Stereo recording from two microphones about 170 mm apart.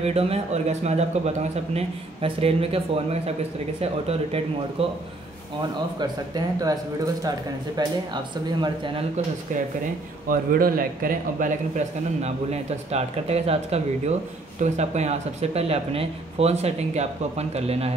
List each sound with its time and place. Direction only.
0.0 s speech: 35° right (ahead or behind)
5.9 s speech: 25° right (ahead or behind)
10.2 s a man's voice: 55° right (ahead or behind); by 17.9 s 35° right (ahead or behind)